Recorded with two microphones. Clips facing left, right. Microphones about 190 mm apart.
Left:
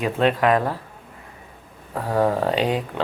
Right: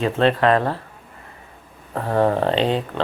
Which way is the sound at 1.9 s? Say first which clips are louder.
Right 2 dB; 5° left (ahead or behind).